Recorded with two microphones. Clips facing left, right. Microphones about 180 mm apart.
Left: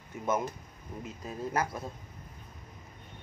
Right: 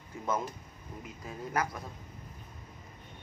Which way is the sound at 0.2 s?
20° left (ahead or behind).